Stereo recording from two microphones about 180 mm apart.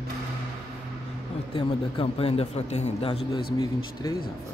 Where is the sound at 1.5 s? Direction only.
30° left (ahead or behind).